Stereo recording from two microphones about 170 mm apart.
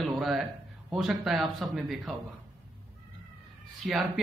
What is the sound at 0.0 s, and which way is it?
Speech, centre (ahead or behind).